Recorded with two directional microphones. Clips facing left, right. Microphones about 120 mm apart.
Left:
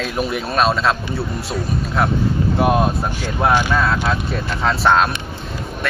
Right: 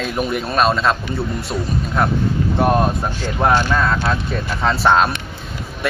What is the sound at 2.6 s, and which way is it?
Speech, 5° left (ahead or behind).